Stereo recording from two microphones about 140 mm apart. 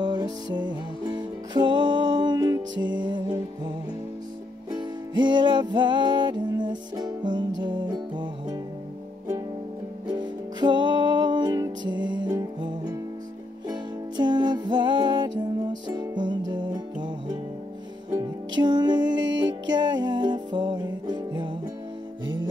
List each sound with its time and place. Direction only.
0.0 s music: 30° right (ahead or behind)
10.1 s music: 35° right (ahead or behind)
18.6 s music: 30° right (ahead or behind)